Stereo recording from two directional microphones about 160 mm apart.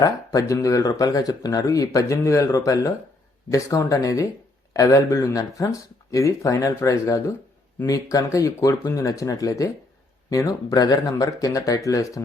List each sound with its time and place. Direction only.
0.0 s speech: 20° left (ahead or behind)